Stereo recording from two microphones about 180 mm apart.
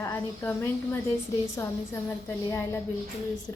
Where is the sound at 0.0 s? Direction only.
15° left (ahead or behind).